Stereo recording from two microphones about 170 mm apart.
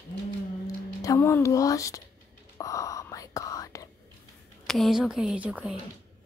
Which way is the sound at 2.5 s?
20° left (ahead or behind).